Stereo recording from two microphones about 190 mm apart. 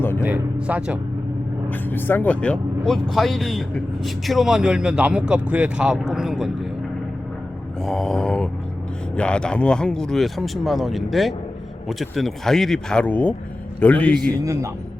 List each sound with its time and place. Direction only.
0.2 s a sound: 10° right (ahead or behind)
1.7 s speech: 10° left (ahead or behind)
7.9 s mantra: centre (ahead or behind)
9.1 s a man's voice: 5° left (ahead or behind)
14.4 s speech: 15° right (ahead or behind)